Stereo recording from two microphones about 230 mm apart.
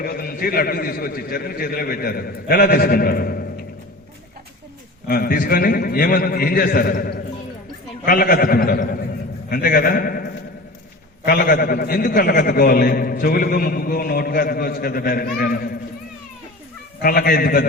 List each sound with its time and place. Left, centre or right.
0.0 s a man's voice: left
5.0 s a man's voice: left
17.0 s a man's voice: left